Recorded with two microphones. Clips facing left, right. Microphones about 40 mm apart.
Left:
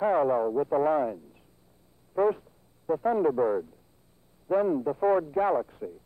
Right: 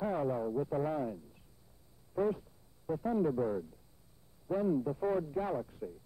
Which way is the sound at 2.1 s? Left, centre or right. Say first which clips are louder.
Left 8 dB; left.